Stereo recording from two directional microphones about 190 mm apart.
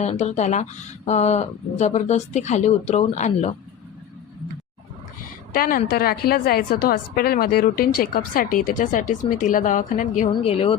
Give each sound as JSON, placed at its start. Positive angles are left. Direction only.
{"t": 0.0, "sound": "speech", "side_deg": 35}
{"t": 5.5, "sound": "a woman's voice", "side_deg": 50}
{"t": 10.4, "sound": "speech", "side_deg": 30}